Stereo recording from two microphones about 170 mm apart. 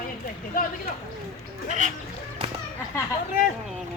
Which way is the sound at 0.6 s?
55° left (ahead or behind).